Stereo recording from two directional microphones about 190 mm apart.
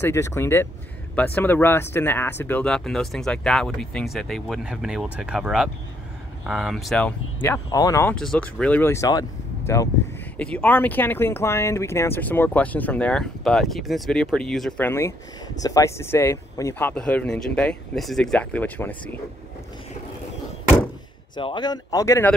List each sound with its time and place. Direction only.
0.0 s speech: 15° left (ahead or behind)
7.4 s speech: 15° left (ahead or behind)
8.1 s speech: 5° left (ahead or behind)
21.4 s speech: 25° left (ahead or behind)